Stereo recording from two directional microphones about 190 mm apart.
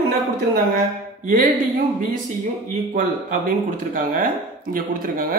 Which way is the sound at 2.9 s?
45° right (ahead or behind).